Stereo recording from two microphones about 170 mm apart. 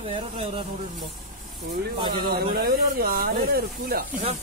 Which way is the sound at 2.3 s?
65° right (ahead or behind).